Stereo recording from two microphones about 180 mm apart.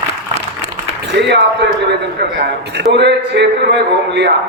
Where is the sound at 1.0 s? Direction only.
70° right (ahead or behind).